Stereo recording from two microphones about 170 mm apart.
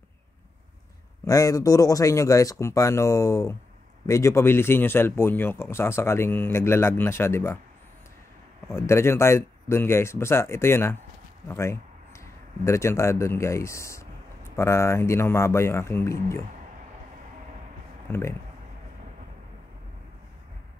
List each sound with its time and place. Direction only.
1.2 s speech: 20° left (ahead or behind)
8.7 s speech: 15° left (ahead or behind)